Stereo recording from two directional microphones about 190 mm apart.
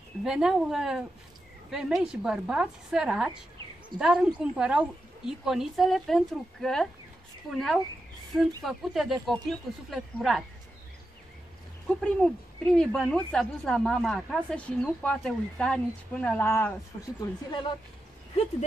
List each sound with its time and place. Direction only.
0.2 s speech: 5° right (ahead or behind)
12.0 s speech: 5° left (ahead or behind)
17.5 s a woman's voice: 25° left (ahead or behind)